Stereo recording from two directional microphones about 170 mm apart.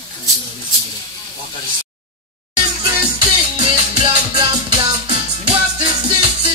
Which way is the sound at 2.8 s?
30° right (ahead or behind).